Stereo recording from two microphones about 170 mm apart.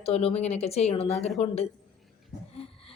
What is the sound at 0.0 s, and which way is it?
Speech, 35° left (ahead or behind).